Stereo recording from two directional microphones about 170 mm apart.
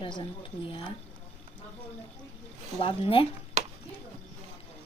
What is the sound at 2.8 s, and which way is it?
Speech, 35° left (ahead or behind).